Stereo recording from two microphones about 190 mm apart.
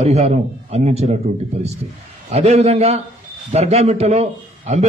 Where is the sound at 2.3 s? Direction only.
35° right (ahead or behind).